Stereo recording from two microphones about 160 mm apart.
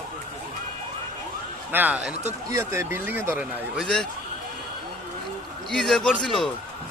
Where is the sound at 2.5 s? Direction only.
15° right (ahead or behind).